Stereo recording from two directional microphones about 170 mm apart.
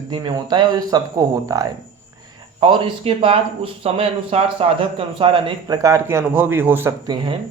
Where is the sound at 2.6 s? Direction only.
30° right (ahead or behind); by 6.9 s 15° right (ahead or behind).